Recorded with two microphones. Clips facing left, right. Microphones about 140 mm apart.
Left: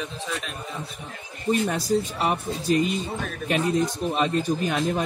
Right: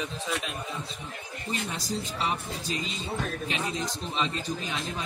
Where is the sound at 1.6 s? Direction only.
60° left (ahead or behind).